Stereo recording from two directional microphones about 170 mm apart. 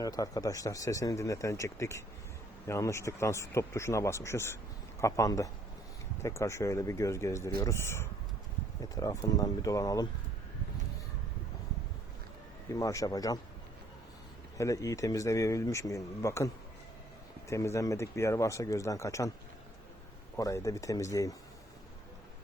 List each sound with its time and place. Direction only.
0.0 s speech: 20° left (ahead or behind)
12.7 s speech: 20° left (ahead or behind)
14.6 s speech: 20° left (ahead or behind)
17.5 s speech: 15° left (ahead or behind)
20.3 s speech: 15° left (ahead or behind)